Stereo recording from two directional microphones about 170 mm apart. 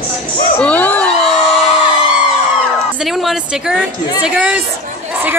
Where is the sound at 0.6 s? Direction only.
10° left (ahead or behind).